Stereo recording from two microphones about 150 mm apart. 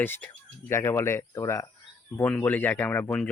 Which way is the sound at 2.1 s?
10° left (ahead or behind).